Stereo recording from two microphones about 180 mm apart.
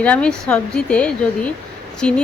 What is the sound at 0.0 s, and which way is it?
A woman's voice, 5° left (ahead or behind).